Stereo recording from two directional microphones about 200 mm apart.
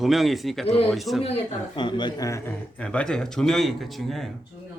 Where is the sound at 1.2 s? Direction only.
25° left (ahead or behind); by 4.3 s centre (ahead or behind).